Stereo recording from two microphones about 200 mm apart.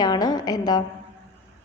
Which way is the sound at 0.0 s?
20° left (ahead or behind).